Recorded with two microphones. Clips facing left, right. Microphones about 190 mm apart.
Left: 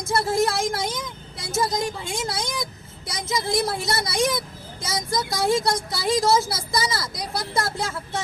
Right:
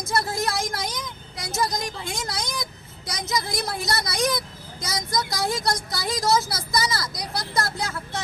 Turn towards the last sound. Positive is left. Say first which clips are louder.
# left 1 dB
turn(degrees=25)  # may be behind; listen again after turning